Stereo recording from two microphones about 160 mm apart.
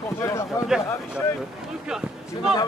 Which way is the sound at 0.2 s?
20° left (ahead or behind).